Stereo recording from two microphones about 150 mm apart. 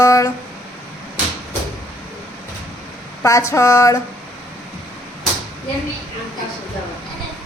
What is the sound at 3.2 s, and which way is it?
Speech, 20° left (ahead or behind).